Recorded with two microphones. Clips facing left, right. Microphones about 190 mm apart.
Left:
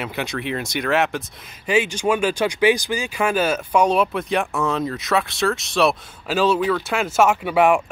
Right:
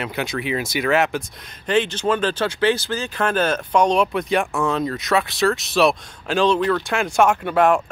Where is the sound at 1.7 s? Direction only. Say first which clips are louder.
Even; 10° left (ahead or behind).